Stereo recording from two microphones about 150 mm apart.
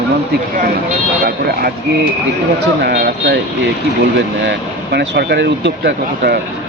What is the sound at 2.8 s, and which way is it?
Speech, 90° right.